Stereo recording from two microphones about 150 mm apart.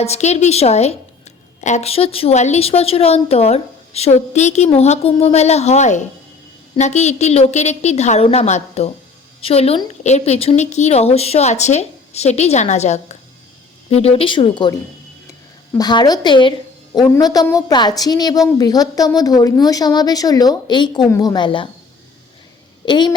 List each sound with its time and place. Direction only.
0.0 s a woman's voice: 45° left (ahead or behind)
22.9 s a woman's voice: 30° left (ahead or behind)